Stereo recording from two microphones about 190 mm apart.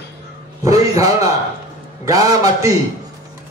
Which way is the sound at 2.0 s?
20° right (ahead or behind).